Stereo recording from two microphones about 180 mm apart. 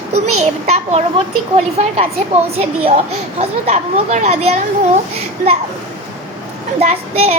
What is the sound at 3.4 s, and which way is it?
A child's voice, 35° right (ahead or behind).